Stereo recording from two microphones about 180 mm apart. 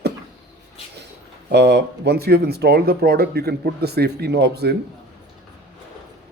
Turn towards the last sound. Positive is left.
turn(degrees=-65)  # may be behind; listen again after turning